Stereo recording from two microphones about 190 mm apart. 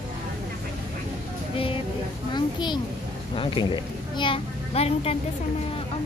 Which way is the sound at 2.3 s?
25° left (ahead or behind).